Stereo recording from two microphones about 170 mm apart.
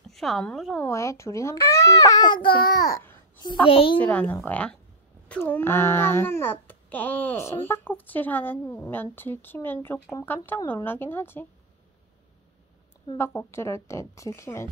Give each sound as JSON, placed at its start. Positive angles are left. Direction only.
{"t": 0.1, "sound": "speech", "side_deg": 0}
{"t": 0.8, "sound": "a child's voice", "side_deg": 15}
{"t": 3.6, "sound": "a child's voice", "side_deg": 30}
{"t": 4.0, "sound": "speech", "side_deg": 10}
{"t": 13.2, "sound": "speech", "side_deg": 15}